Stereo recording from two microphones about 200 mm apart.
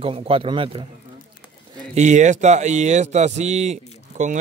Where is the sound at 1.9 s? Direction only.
35° right (ahead or behind).